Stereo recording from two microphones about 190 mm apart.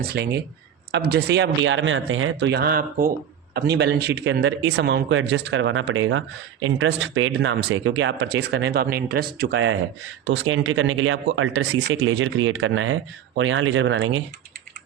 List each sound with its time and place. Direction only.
0.1 s speech: 60° right (ahead or behind)
3.5 s speech: 60° right (ahead or behind)
10.2 s speech: 90° right